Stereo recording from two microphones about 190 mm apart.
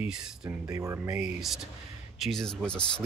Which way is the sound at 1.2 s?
Centre (ahead or behind).